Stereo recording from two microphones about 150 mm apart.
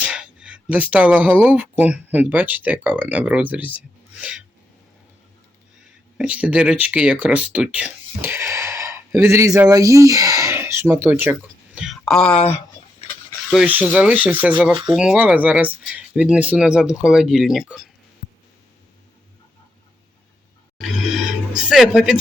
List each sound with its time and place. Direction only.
0.0 s a sound: 5° right (ahead or behind)
1.5 s speech: 10° right (ahead or behind)
4.2 s filing: 10° right (ahead or behind)
6.1 s speech: 10° right (ahead or behind)
13.5 s speech: 5° right (ahead or behind)
20.7 s music: 5° right (ahead or behind)